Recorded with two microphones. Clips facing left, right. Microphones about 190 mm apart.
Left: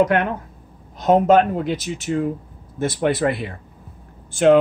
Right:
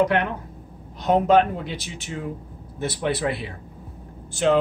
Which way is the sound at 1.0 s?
45° left (ahead or behind).